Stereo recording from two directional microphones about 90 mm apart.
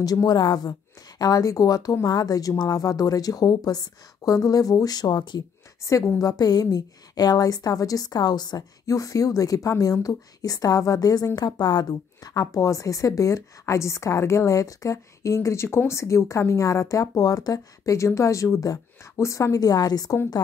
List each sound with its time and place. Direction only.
0.0 s a woman's voice: 45° left (ahead or behind)
5.8 s a woman's voice: 35° left (ahead or behind)
6.2 s a woman's voice: 50° left (ahead or behind)